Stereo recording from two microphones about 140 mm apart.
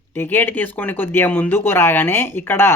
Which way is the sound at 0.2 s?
15° left (ahead or behind).